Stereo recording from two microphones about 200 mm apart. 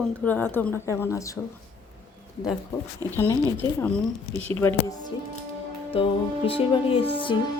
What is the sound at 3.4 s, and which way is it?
A woman's voice, 15° left (ahead or behind).